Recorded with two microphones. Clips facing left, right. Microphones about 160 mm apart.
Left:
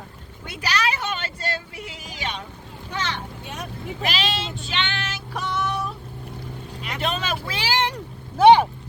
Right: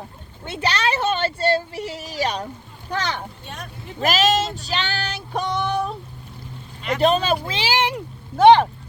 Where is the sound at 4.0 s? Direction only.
45° right (ahead or behind).